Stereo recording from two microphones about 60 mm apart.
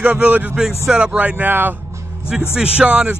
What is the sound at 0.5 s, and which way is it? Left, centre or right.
A man's voice, centre.